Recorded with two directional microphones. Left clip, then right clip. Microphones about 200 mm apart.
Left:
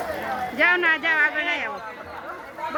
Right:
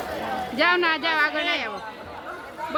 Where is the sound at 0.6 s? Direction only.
10° right (ahead or behind).